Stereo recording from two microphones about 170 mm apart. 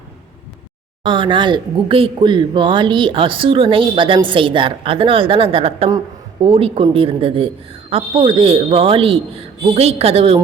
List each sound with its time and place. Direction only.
1.0 s speech: 30° right (ahead or behind)